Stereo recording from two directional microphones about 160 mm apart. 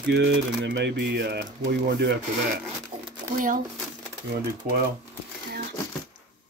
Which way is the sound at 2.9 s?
30° right (ahead or behind).